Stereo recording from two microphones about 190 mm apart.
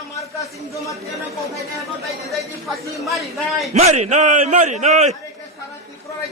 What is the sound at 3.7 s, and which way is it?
Speech, 35° right (ahead or behind).